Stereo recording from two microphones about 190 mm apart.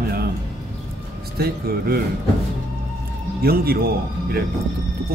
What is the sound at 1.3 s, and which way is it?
Speech, 55° right (ahead or behind).